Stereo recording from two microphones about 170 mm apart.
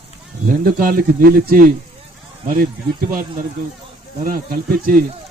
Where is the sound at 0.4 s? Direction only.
55° right (ahead or behind).